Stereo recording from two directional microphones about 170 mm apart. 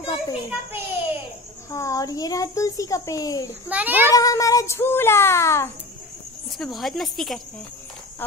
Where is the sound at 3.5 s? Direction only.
10° right (ahead or behind).